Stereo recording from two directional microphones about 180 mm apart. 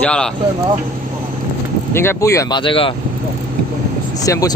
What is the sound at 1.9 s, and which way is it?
Speech, 15° left (ahead or behind).